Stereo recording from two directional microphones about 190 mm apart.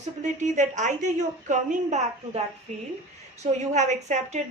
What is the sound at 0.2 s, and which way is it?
A woman's voice, 40° right (ahead or behind).